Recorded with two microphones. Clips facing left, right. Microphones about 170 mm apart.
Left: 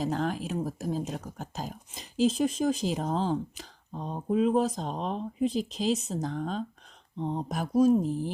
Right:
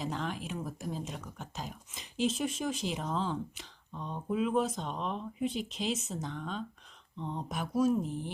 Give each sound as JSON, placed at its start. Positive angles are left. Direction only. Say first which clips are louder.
{"t": 0.0, "sound": "speech", "louder": "left 7 dB", "side_deg": 40}